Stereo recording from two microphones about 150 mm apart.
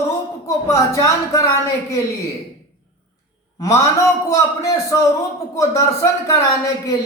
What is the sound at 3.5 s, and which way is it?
Speech, 20° left (ahead or behind).